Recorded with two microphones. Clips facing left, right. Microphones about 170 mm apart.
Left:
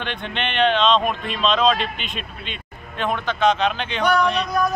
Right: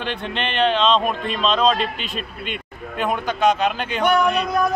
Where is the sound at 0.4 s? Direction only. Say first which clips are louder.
Left 1 dB; 35° right (ahead or behind).